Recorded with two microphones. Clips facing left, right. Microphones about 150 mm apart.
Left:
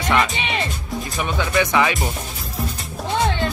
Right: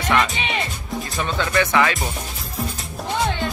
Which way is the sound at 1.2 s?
15° left (ahead or behind).